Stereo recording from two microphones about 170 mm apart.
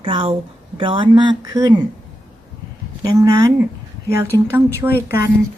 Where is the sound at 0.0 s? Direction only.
30° right (ahead or behind).